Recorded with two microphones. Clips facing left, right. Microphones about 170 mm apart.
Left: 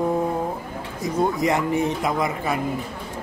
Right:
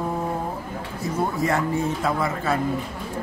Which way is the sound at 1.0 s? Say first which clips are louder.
Left 3 dB; 15° left (ahead or behind).